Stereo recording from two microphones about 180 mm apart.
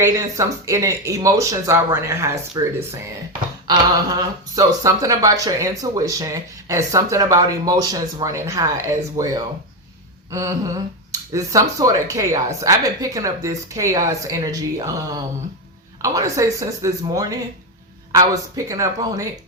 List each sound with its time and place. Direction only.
0.0 s speech: 20° right (ahead or behind)
3.7 s speech: 20° right (ahead or behind)
11.1 s speech: 20° right (ahead or behind)